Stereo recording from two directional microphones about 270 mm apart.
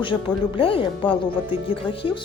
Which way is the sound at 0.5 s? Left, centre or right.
Centre.